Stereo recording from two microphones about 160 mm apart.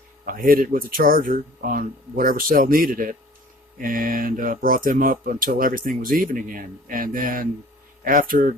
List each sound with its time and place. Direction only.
0.3 s speech: 60° right (ahead or behind)